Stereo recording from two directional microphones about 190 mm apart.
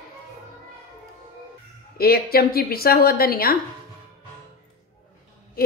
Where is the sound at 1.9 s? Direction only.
55° left (ahead or behind).